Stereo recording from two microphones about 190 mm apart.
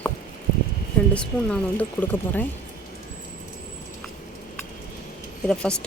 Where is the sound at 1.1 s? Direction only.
5° left (ahead or behind).